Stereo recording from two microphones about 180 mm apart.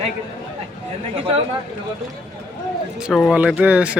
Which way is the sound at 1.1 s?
30° right (ahead or behind).